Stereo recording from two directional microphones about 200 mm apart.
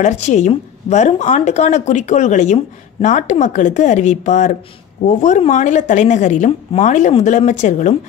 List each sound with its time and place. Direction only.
0.0 s a woman's voice: 35° left (ahead or behind)